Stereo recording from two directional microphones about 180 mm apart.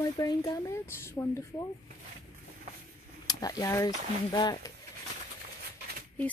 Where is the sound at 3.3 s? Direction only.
20° left (ahead or behind).